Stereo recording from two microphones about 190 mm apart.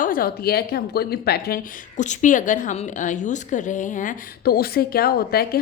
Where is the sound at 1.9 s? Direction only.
40° left (ahead or behind).